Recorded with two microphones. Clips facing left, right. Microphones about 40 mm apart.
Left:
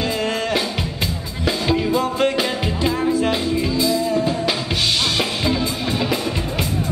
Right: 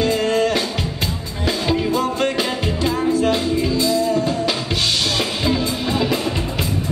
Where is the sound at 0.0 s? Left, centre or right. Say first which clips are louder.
Right 4 dB; centre.